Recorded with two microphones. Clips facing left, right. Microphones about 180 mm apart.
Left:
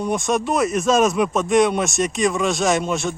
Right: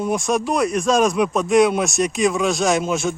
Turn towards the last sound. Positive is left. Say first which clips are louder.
# right 1 dB
turn(degrees=0)  # may be behind; listen again after turning